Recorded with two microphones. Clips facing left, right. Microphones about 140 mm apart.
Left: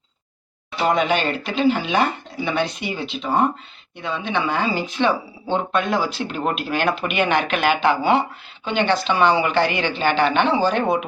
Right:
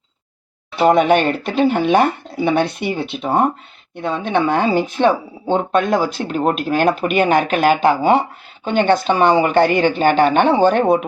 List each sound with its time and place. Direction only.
0.9 s speech: 55° right (ahead or behind)